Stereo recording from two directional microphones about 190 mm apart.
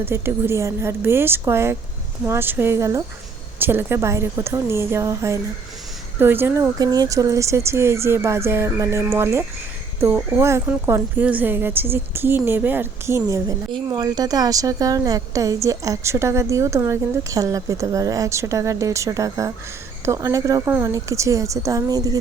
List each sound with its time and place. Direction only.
0.0 s a woman's voice: 10° right (ahead or behind)